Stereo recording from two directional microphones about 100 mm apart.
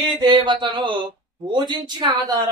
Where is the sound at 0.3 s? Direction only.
50° right (ahead or behind).